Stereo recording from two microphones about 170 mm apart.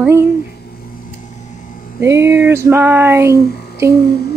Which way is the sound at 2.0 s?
15° right (ahead or behind).